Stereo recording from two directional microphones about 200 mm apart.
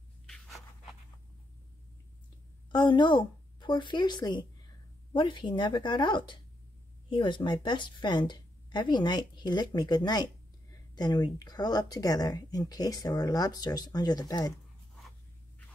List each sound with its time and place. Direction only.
0.3 s writing: centre (ahead or behind)
2.7 s speech: 25° left (ahead or behind)